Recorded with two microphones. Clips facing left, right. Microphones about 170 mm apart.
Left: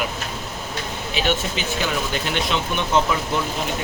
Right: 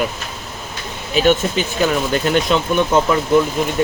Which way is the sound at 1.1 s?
45° right (ahead or behind).